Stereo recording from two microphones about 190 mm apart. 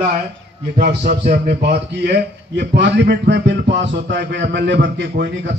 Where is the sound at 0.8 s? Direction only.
60° right (ahead or behind).